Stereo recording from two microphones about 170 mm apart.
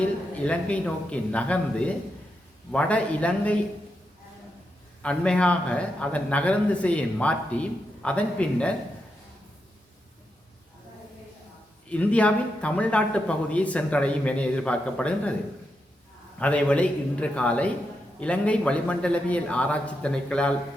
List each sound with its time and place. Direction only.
0.0 s speech: 5° left (ahead or behind)
5.0 s speech: 5° left (ahead or behind)
11.9 s speech: 5° left (ahead or behind)
16.4 s speech: 5° left (ahead or behind)